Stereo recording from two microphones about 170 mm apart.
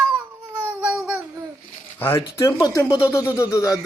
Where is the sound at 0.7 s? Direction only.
5° right (ahead or behind).